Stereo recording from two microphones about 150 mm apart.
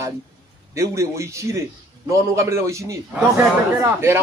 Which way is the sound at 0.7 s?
20° right (ahead or behind).